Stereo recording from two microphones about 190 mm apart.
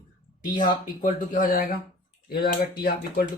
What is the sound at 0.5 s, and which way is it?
Speech, 45° left (ahead or behind).